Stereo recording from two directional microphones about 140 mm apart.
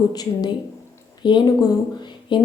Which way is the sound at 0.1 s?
30° left (ahead or behind).